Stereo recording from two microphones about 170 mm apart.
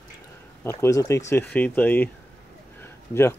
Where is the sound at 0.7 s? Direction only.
15° left (ahead or behind).